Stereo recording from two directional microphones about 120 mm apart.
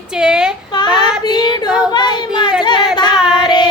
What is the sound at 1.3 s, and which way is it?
Female singing, 40° left (ahead or behind).